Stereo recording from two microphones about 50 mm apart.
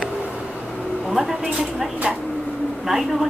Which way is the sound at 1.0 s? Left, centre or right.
Centre.